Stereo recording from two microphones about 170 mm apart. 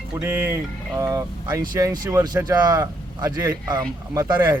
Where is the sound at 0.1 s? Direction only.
10° right (ahead or behind).